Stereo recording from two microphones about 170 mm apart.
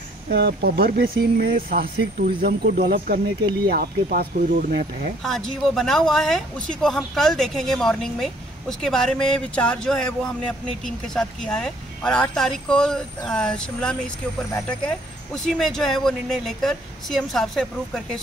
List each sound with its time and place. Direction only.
0.3 s speech: 70° right (ahead or behind)
5.2 s speech: 5° left (ahead or behind)